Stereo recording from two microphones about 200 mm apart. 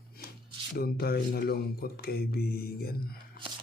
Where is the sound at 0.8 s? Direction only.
50° left (ahead or behind).